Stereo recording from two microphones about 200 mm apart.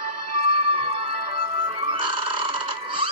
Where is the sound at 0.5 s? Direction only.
30° right (ahead or behind).